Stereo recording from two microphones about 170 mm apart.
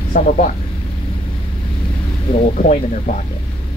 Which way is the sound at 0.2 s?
50° left (ahead or behind).